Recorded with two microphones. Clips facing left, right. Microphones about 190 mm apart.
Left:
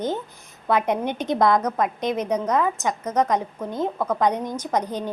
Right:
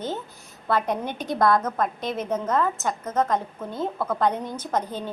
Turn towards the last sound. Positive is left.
turn(degrees=15)  # may be behind; listen again after turning